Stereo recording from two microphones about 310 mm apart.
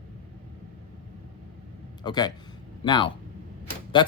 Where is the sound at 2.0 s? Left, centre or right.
Centre.